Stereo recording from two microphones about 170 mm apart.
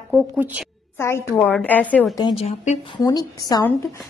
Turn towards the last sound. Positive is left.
turn(degrees=15)  # may be behind; listen again after turning